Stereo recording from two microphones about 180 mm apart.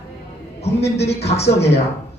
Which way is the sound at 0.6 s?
35° left (ahead or behind).